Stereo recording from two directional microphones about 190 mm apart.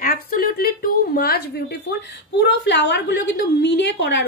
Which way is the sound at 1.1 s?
55° left (ahead or behind).